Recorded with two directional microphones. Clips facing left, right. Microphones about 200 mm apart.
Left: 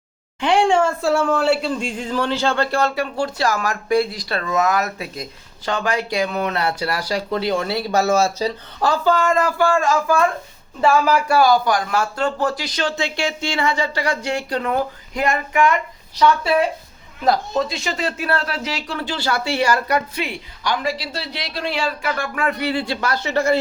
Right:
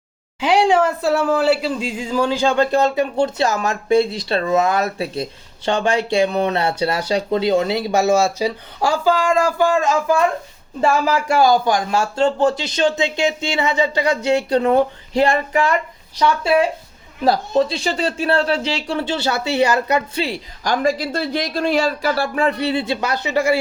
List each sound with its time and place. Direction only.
0.3 s speech: 5° right (ahead or behind)